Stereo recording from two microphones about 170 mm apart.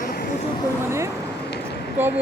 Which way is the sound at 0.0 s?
60° left (ahead or behind).